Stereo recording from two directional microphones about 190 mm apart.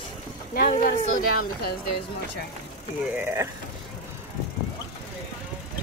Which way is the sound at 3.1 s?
15° right (ahead or behind).